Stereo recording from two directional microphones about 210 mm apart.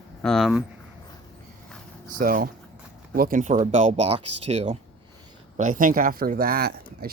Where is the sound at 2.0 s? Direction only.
40° right (ahead or behind).